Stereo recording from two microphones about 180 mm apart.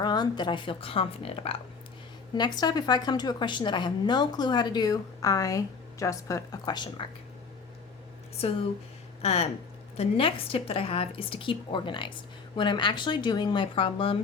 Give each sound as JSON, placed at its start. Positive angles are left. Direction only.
{"t": 0.0, "sound": "a woman's voice", "side_deg": 25}
{"t": 9.2, "sound": "a woman's voice", "side_deg": 35}